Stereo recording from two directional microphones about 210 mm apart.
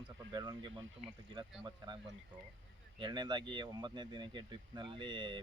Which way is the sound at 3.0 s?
20° right (ahead or behind).